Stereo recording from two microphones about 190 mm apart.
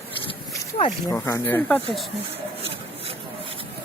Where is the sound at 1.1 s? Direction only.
10° left (ahead or behind).